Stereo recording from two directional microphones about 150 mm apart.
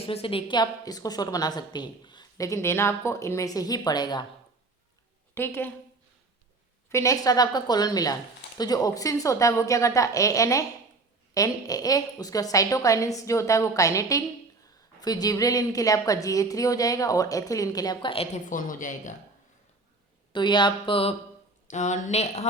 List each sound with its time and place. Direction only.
0.1 s a woman's voice: 40° left (ahead or behind)
5.3 s a woman's voice: 15° left (ahead or behind)
6.9 s a woman's voice: 20° left (ahead or behind)
18.4 s speech: 60° left (ahead or behind)
20.3 s speech: 30° left (ahead or behind)
21.7 s speech: 55° left (ahead or behind)